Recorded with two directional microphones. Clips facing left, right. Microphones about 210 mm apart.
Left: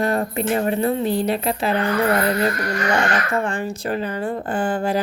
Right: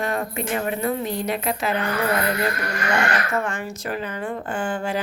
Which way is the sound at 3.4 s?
30° left (ahead or behind).